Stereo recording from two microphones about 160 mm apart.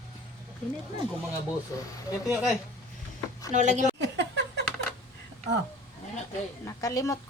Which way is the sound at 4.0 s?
90° right.